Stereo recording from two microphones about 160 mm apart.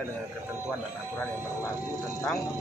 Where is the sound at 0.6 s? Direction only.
15° left (ahead or behind).